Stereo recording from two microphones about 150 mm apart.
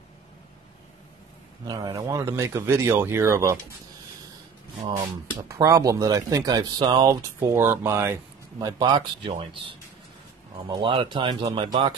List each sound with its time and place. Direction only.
1.7 s speech: 25° right (ahead or behind)
4.8 s speech: 30° right (ahead or behind)
10.8 s speech: 35° right (ahead or behind)